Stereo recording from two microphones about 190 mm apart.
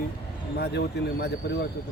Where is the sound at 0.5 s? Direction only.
60° left (ahead or behind).